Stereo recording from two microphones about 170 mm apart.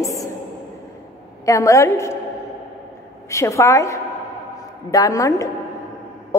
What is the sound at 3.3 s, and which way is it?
A woman's voice, 15° left (ahead or behind).